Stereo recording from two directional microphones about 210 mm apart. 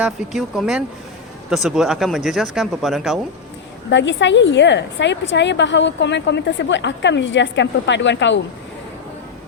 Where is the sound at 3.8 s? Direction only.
60° left (ahead or behind).